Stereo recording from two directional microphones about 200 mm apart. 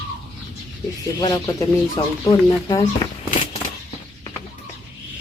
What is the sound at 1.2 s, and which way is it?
Speech, 15° left (ahead or behind).